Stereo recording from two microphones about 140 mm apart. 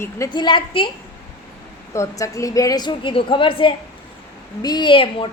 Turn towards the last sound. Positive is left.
turn(degrees=40)  # may be behind; listen again after turning